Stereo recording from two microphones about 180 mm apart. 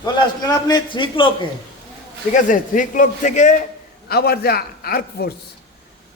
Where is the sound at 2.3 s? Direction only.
50° left (ahead or behind).